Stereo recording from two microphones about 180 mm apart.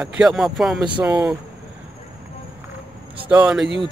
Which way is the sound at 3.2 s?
5° right (ahead or behind).